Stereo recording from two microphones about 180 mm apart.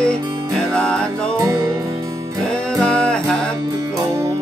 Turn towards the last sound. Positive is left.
turn(degrees=5)  # may be behind; listen again after turning